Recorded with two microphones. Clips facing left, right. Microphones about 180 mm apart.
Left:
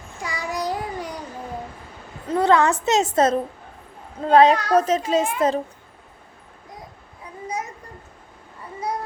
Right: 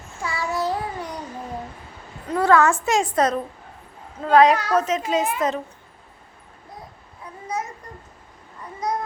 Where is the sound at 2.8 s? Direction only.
25° left (ahead or behind).